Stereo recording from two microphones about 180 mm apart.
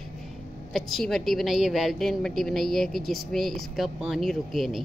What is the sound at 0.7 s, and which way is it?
A woman's voice, centre (ahead or behind).